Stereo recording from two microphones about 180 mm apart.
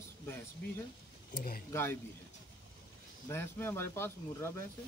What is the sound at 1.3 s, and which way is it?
Speech, 55° left (ahead or behind).